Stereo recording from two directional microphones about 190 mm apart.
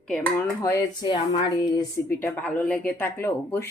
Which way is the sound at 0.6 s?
20° left (ahead or behind).